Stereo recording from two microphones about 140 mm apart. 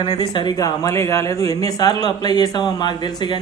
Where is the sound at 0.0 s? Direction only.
30° left (ahead or behind).